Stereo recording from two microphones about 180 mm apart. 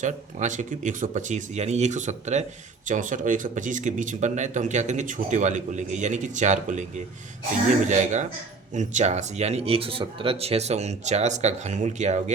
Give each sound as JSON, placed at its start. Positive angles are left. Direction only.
{"t": 0.0, "sound": "speech", "side_deg": -40}
{"t": 7.9, "sound": "speech", "side_deg": -40}